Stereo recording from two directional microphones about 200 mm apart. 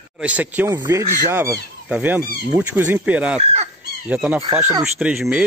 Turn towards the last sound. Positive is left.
turn(degrees=-5)  # may be behind; listen again after turning